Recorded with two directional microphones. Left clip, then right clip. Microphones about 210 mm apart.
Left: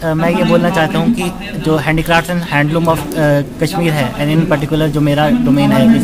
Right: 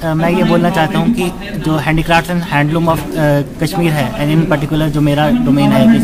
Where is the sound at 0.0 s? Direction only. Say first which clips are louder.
Even; 15° left (ahead or behind).